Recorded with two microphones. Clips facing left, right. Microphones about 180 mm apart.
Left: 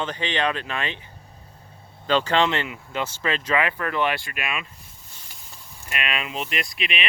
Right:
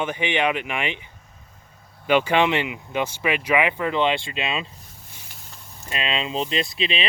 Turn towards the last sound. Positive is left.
turn(degrees=-30)  # may be behind; listen again after turning